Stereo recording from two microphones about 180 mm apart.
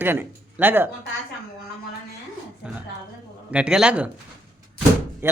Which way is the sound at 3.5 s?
5° right (ahead or behind).